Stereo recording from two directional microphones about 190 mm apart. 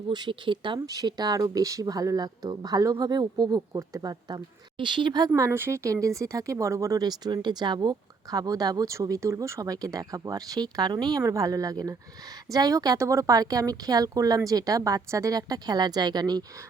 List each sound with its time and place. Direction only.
0.1 s speech: 25° right (ahead or behind)